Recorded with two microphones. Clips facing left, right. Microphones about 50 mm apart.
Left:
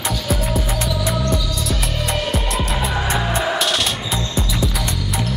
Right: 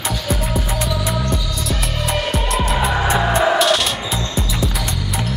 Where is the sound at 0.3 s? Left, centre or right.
Centre.